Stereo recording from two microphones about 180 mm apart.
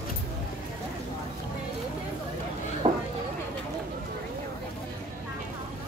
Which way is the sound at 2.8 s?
30° right (ahead or behind).